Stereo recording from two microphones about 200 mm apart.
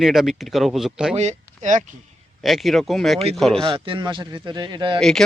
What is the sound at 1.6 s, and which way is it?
Speech, 40° right (ahead or behind).